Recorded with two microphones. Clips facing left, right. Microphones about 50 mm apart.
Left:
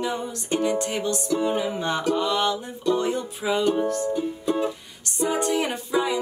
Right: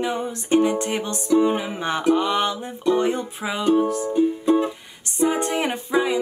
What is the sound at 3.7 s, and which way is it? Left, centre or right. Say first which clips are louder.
Music: right 4 dB; centre.